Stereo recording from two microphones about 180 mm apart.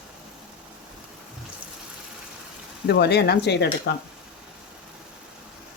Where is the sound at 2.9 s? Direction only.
65° left (ahead or behind).